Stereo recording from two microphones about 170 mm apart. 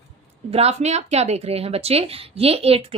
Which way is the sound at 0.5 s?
40° right (ahead or behind).